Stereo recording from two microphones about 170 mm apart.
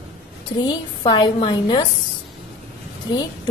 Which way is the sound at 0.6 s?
25° left (ahead or behind).